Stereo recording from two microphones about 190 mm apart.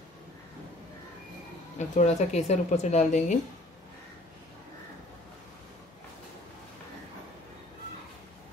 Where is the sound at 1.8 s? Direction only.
40° left (ahead or behind).